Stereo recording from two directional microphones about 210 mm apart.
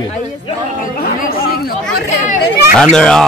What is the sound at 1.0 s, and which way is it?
Chatter, 45° left (ahead or behind).